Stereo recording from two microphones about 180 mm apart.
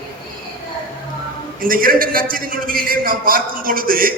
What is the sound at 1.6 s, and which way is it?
A man's voice, 50° right (ahead or behind).